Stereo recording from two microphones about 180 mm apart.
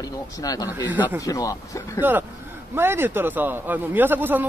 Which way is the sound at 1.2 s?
20° left (ahead or behind).